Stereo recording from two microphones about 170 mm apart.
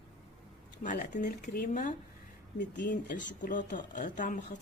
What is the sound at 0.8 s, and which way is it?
A woman's voice, 50° left (ahead or behind).